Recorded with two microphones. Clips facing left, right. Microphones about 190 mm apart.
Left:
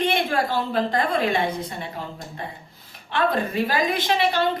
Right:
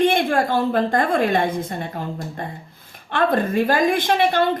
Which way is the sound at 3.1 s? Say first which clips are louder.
Right 4 dB; 50° right (ahead or behind).